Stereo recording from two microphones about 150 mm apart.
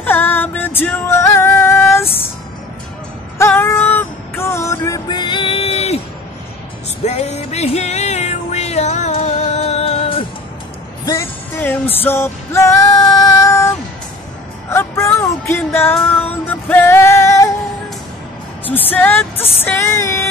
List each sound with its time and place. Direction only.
0.0 s music: 15° left (ahead or behind)
3.3 s music: 15° left (ahead or behind); by 5.9 s 40° left (ahead or behind)
7.1 s music: 45° left (ahead or behind)
11.1 s music: 15° left (ahead or behind)
18.7 s music: 10° left (ahead or behind)